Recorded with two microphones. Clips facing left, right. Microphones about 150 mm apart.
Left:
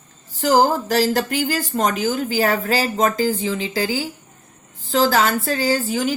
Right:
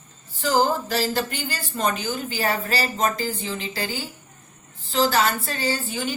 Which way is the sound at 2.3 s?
45° left (ahead or behind).